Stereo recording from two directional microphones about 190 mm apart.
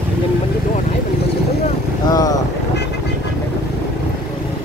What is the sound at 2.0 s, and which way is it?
Speech, 20° left (ahead or behind).